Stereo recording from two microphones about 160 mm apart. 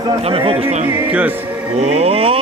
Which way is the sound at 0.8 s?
10° right (ahead or behind).